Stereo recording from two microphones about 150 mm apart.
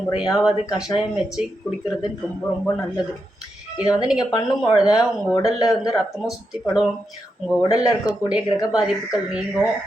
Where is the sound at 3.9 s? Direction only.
5° right (ahead or behind).